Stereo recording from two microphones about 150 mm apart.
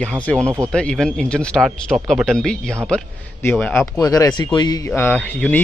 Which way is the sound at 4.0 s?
25° left (ahead or behind).